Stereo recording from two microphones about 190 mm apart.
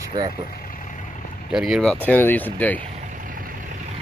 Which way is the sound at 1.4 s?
5° right (ahead or behind).